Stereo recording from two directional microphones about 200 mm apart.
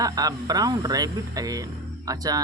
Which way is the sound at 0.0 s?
20° right (ahead or behind).